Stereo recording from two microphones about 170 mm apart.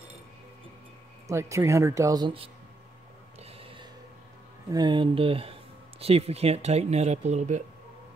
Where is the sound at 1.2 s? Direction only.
15° right (ahead or behind).